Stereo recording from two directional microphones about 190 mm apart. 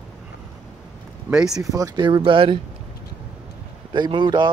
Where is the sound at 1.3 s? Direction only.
5° right (ahead or behind).